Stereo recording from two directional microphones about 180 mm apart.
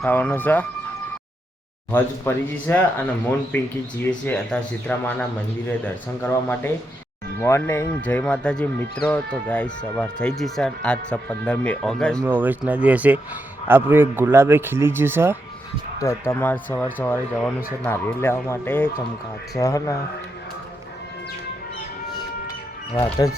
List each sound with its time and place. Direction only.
0.0 s speech: 10° left (ahead or behind)
1.9 s speech: 10° left (ahead or behind)
12.2 s a man's voice: 10° right (ahead or behind)
16.0 s speech: 15° left (ahead or behind)
17.8 s speech: 15° left (ahead or behind)